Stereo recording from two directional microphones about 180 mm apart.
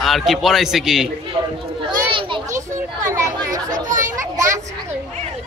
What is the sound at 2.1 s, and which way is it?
Speech, 30° right (ahead or behind).